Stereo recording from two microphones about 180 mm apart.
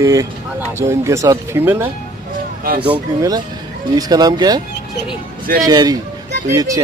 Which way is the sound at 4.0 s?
20° right (ahead or behind).